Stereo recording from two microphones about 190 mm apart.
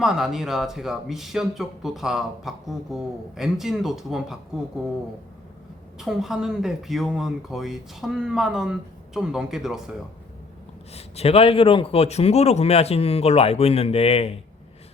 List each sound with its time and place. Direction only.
0.0 s speech: centre (ahead or behind)
6.0 s speech: centre (ahead or behind)
10.9 s a man's voice: 30° left (ahead or behind)